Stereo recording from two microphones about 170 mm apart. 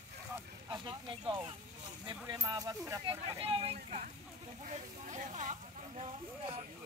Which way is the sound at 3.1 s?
30° right (ahead or behind).